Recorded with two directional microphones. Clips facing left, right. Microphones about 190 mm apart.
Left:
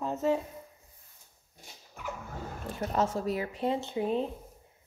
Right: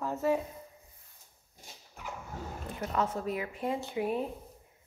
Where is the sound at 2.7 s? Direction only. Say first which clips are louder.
Left 3 dB; 30° left (ahead or behind).